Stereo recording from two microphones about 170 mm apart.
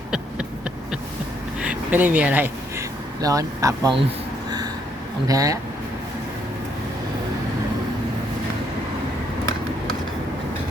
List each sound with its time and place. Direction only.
1.6 s a sound: 10° right (ahead or behind)
3.2 s speech: 20° right (ahead or behind)
5.3 s speech: 20° right (ahead or behind)